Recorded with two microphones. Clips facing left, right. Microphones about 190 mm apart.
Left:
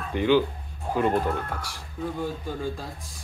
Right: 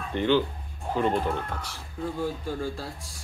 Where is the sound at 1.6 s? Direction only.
15° left (ahead or behind).